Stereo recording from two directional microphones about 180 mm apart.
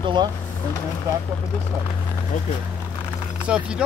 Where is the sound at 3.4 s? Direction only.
5° right (ahead or behind).